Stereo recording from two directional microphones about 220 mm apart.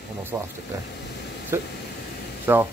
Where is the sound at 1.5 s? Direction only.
10° right (ahead or behind).